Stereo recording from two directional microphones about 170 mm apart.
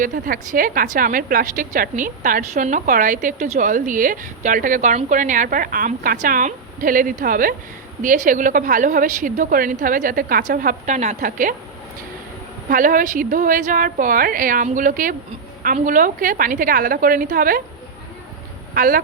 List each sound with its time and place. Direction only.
0.0 s a woman's voice: 55° right (ahead or behind)
12.7 s a woman's voice: 50° right (ahead or behind)
18.7 s speech: 55° right (ahead or behind)